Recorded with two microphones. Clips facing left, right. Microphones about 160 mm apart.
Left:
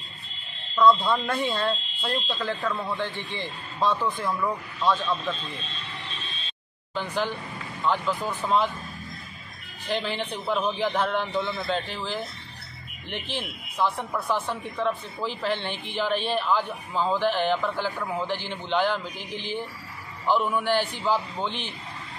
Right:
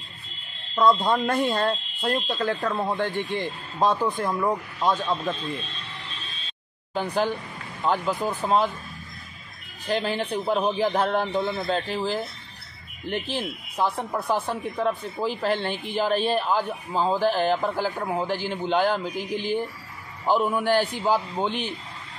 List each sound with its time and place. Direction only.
1.0 s speech: 45° right (ahead or behind)
7.8 s speech: 40° right (ahead or behind)
9.8 s speech: 40° right (ahead or behind)